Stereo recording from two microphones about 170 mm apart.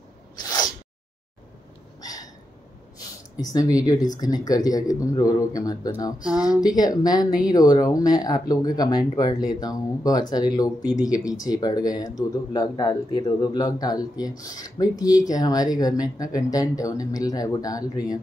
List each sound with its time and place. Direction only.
0.4 s sneeze: 25° left (ahead or behind)
2.0 s hiccup: 20° left (ahead or behind)
3.8 s speech: 20° left (ahead or behind)